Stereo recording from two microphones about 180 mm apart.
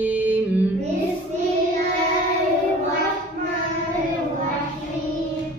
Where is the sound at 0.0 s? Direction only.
10° right (ahead or behind).